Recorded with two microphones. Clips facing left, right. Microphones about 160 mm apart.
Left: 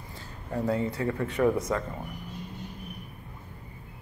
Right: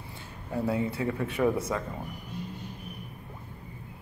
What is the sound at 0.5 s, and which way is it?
Speech, 10° right (ahead or behind).